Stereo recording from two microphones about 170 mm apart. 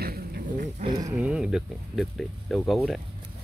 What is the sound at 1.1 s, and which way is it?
Speech, 5° right (ahead or behind).